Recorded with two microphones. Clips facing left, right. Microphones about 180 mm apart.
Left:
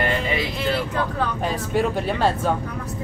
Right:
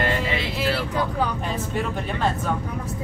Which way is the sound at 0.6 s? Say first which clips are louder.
Left 1 dB; 10° right (ahead or behind).